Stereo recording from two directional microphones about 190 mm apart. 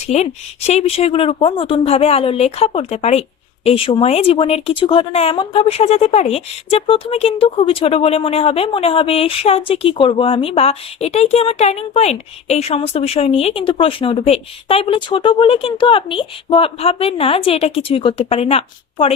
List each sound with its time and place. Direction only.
0.1 s speech: 35° left (ahead or behind)